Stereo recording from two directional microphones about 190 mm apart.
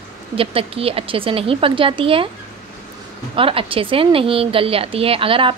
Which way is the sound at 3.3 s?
30° right (ahead or behind).